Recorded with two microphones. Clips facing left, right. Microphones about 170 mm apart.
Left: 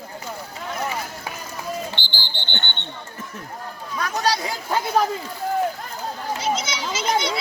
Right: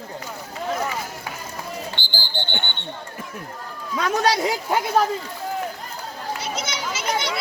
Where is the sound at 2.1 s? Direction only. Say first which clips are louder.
Right 4 dB; 45° right (ahead or behind).